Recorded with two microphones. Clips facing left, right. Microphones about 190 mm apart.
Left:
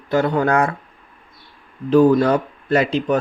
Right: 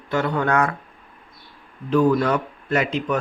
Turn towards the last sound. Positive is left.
turn(degrees=30)  # may be behind; listen again after turning